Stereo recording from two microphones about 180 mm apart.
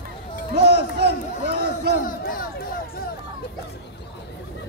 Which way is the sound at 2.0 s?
55° left (ahead or behind).